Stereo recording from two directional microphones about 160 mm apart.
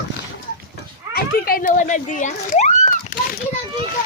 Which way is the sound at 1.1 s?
65° left (ahead or behind).